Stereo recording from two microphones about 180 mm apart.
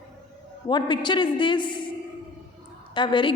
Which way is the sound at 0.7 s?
25° left (ahead or behind).